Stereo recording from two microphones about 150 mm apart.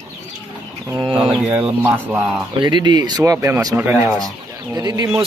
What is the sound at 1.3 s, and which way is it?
Speech, 10° right (ahead or behind).